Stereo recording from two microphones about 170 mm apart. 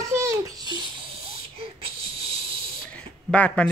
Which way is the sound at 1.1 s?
35° right (ahead or behind).